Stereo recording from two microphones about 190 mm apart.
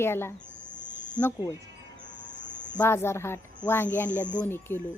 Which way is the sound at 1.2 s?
15° left (ahead or behind).